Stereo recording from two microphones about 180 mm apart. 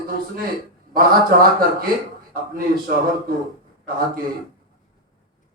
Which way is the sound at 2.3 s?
55° right (ahead or behind).